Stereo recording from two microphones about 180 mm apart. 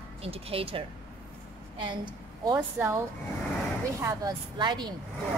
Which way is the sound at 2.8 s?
10° right (ahead or behind).